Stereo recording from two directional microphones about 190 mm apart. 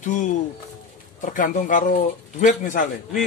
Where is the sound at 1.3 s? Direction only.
45° left (ahead or behind).